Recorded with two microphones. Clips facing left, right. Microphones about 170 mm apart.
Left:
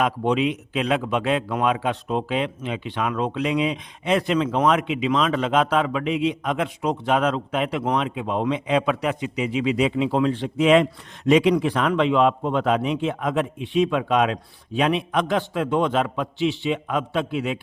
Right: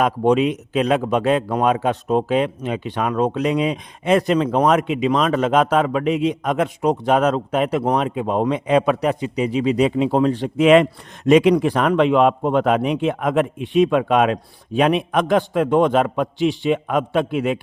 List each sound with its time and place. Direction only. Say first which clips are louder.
0.0 s a man's voice: right 5 dB; 45° right (ahead or behind)